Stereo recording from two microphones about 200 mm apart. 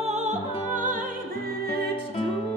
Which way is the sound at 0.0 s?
35° right (ahead or behind).